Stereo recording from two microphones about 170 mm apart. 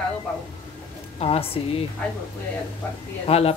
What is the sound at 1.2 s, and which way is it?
Speech, 35° left (ahead or behind).